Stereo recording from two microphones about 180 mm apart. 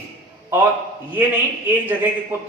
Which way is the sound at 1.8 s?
10° right (ahead or behind).